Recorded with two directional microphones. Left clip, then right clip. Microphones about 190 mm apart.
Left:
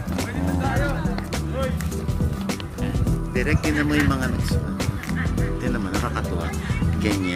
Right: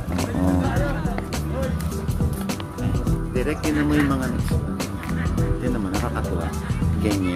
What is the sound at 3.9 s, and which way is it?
Speech, 15° right (ahead or behind).